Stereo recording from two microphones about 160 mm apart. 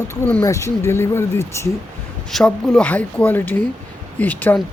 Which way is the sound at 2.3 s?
5° left (ahead or behind).